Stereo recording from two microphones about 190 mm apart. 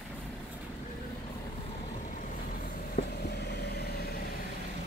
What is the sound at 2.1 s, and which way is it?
Vehicle, 45° left (ahead or behind).